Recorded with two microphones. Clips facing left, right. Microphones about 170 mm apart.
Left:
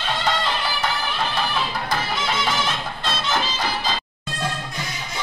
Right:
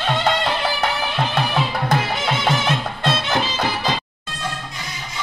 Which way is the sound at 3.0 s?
60° right (ahead or behind).